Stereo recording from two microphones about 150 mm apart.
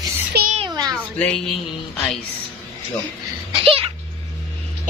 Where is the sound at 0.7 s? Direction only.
25° right (ahead or behind).